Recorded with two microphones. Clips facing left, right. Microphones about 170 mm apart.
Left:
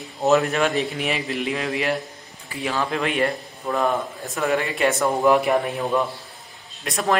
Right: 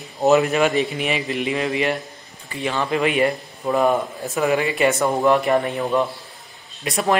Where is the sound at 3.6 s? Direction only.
15° right (ahead or behind).